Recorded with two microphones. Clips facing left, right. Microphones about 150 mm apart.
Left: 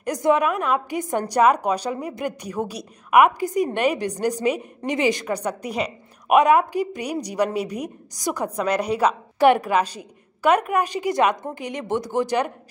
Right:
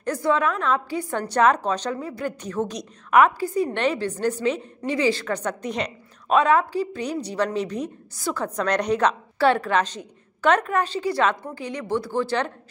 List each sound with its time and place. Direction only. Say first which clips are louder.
0.0 s a woman's voice: left 2 dB; 15° left (ahead or behind)